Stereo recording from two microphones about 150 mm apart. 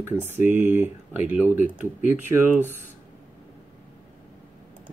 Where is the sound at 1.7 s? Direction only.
60° right (ahead or behind).